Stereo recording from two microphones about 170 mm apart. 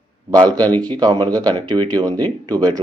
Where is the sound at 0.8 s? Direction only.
25° right (ahead or behind).